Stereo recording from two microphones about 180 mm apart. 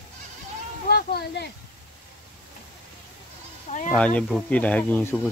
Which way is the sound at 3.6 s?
45° left (ahead or behind).